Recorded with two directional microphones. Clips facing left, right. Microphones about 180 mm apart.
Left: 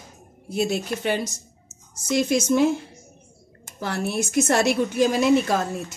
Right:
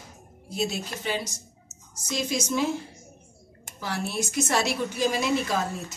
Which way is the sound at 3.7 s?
55° left (ahead or behind).